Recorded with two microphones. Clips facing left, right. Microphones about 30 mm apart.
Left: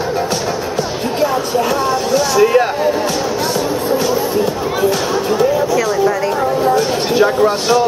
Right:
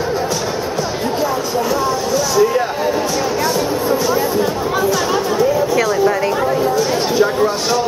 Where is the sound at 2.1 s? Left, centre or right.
Left.